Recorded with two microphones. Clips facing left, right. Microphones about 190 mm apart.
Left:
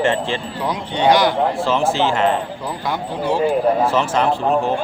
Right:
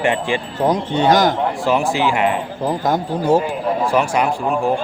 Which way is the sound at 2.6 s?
45° right (ahead or behind).